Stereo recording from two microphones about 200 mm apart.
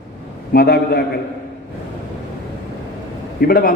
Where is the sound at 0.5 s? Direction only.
50° left (ahead or behind).